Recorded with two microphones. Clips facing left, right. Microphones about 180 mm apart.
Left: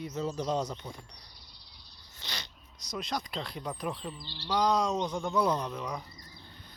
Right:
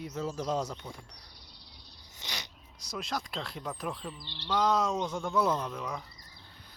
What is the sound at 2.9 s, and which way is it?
Speech, 5° right (ahead or behind).